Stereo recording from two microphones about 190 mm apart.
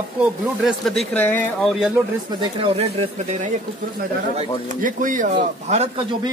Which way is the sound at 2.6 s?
30° right (ahead or behind).